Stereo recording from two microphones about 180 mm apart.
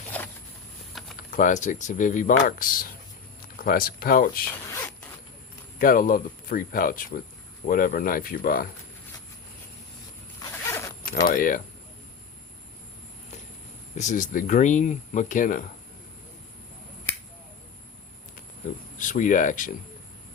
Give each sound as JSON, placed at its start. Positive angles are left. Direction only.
{"t": 0.1, "sound": "a sound", "side_deg": 10}
{"t": 0.9, "sound": "typing", "side_deg": 0}
{"t": 1.3, "sound": "speech", "side_deg": 45}
{"t": 5.8, "sound": "speech", "side_deg": 50}
{"t": 10.4, "sound": "zipper", "side_deg": 15}
{"t": 11.0, "sound": "speech", "side_deg": 50}
{"t": 13.9, "sound": "speech", "side_deg": 40}
{"t": 18.9, "sound": "speech", "side_deg": 45}